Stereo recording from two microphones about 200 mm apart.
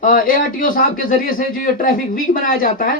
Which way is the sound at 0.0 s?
45° left (ahead or behind).